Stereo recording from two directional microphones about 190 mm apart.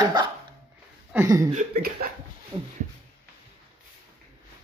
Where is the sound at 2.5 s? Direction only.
25° right (ahead or behind).